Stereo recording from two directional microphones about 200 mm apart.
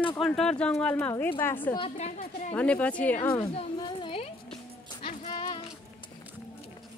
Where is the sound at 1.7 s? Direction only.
30° left (ahead or behind).